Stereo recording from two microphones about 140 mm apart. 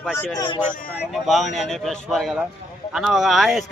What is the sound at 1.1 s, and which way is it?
Speech, centre (ahead or behind).